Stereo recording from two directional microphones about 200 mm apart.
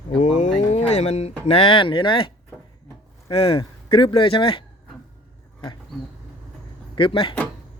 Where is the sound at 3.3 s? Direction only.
30° left (ahead or behind).